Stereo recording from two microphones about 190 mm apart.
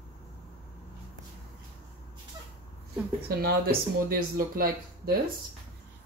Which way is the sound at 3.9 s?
50° right (ahead or behind).